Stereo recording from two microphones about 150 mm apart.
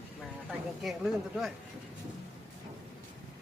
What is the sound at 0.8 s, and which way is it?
Speech, centre (ahead or behind).